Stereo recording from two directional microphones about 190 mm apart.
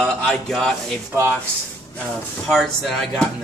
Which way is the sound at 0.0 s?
Centre (ahead or behind).